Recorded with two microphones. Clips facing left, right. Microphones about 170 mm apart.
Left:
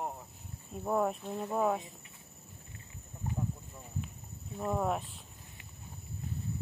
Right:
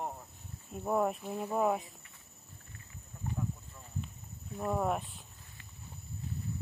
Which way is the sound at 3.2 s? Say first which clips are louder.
Left 1 dB; 15° left (ahead or behind).